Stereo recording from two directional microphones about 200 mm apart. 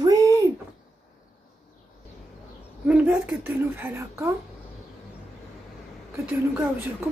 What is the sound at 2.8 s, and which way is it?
Speech, 10° right (ahead or behind).